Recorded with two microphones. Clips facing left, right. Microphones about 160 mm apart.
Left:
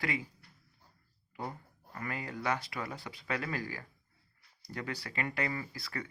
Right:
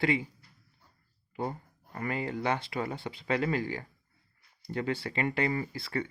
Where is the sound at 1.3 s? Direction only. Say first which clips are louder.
Right 6 dB; 30° right (ahead or behind).